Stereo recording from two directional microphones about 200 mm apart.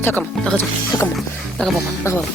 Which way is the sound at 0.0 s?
10° left (ahead or behind).